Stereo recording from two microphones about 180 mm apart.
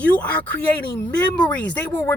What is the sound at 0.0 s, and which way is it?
Speech, 5° left (ahead or behind).